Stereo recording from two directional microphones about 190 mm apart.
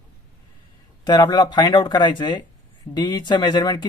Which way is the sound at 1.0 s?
20° left (ahead or behind).